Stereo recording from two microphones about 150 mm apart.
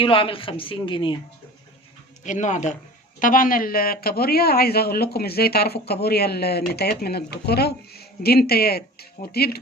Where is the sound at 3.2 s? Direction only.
65° left (ahead or behind).